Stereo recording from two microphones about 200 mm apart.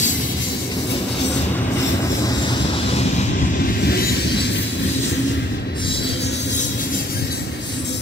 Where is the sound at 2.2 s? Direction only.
25° left (ahead or behind).